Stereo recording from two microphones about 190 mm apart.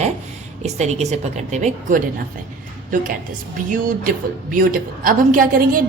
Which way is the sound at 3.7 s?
45° right (ahead or behind).